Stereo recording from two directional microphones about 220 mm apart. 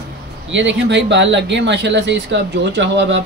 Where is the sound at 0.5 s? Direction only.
55° right (ahead or behind).